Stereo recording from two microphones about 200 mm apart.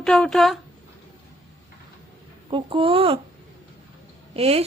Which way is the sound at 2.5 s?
25° right (ahead or behind).